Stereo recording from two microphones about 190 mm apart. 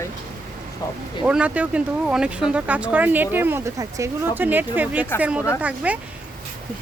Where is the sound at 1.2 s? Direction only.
5° right (ahead or behind).